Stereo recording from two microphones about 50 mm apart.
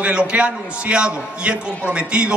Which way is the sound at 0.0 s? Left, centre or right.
Right.